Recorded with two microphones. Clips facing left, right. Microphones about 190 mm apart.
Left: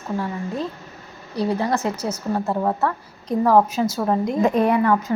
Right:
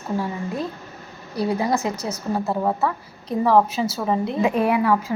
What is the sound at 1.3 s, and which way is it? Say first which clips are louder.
A woman's voice: even; 10° right (ahead or behind).